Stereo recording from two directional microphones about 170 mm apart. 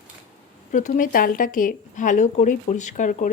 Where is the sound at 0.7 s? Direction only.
50° left (ahead or behind).